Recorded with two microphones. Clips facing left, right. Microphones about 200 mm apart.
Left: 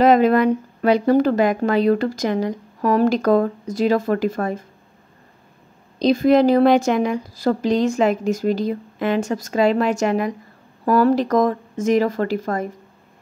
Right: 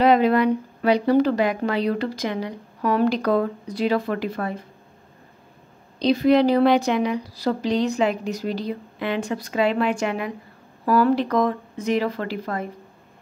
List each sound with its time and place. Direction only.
0.0 s speech: 45° left (ahead or behind)
5.9 s speech: 45° left (ahead or behind)